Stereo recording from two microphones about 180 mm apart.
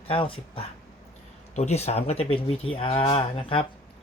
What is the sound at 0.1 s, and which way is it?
Speech, 30° left (ahead or behind).